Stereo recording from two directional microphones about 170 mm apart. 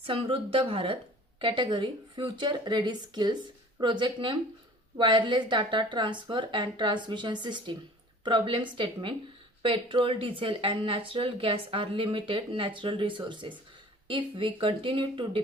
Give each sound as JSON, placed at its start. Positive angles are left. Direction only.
{"t": 0.0, "sound": "speech", "side_deg": -30}